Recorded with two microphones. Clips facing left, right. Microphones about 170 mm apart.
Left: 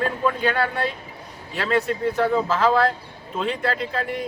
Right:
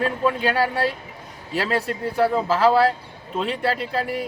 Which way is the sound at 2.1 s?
10° right (ahead or behind).